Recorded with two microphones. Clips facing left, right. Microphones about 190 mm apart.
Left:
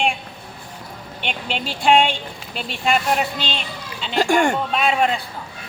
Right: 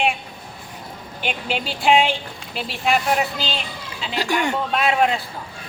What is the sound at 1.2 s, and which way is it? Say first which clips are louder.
A man's voice: right 1 dB; 5° right (ahead or behind).